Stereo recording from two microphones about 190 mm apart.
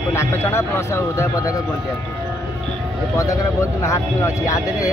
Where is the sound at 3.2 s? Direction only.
15° left (ahead or behind).